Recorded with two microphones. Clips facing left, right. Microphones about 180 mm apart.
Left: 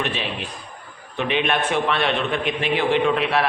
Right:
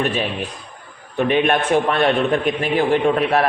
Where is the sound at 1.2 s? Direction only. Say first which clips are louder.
Right 5 dB; 45° right (ahead or behind).